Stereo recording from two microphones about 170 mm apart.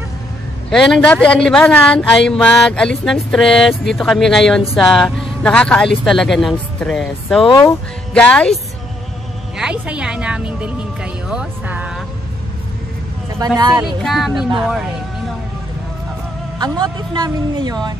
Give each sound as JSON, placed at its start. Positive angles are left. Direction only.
{"t": 0.7, "sound": "speech", "side_deg": 5}
{"t": 9.6, "sound": "speech", "side_deg": -5}
{"t": 13.7, "sound": "speech", "side_deg": -5}
{"t": 16.5, "sound": "a woman's voice", "side_deg": -25}